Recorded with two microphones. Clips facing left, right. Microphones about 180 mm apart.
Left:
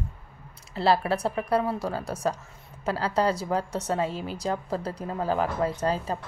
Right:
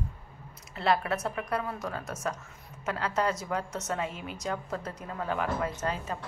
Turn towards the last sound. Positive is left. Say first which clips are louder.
# left 6 dB
turn(degrees=35)  # may be behind; listen again after turning